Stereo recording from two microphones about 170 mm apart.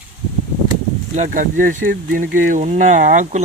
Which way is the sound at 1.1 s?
50° right (ahead or behind).